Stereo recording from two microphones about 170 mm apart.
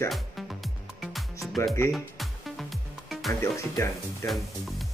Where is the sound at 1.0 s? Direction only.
Centre (ahead or behind).